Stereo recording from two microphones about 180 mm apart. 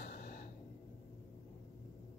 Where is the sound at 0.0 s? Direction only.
55° left (ahead or behind).